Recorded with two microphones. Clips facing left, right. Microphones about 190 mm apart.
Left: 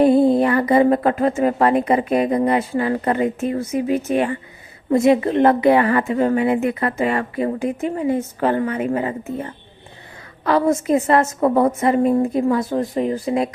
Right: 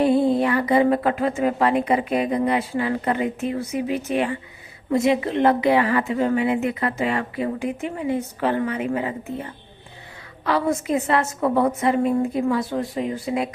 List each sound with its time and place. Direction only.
0.0 s a woman's voice: 45° left (ahead or behind)